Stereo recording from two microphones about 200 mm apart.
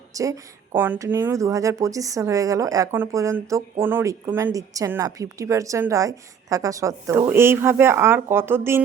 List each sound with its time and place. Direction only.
0.1 s speech: 15° right (ahead or behind)